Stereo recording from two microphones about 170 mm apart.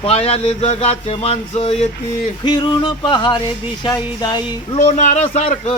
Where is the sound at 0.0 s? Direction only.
35° left (ahead or behind).